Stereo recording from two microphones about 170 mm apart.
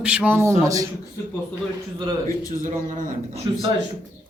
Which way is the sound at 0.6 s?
20° right (ahead or behind).